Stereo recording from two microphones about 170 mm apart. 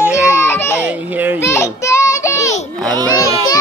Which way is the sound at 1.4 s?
15° left (ahead or behind).